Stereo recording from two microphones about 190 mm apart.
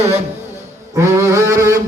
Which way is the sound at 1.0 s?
15° right (ahead or behind).